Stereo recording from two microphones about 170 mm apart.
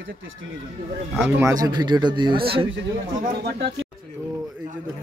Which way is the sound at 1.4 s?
20° right (ahead or behind).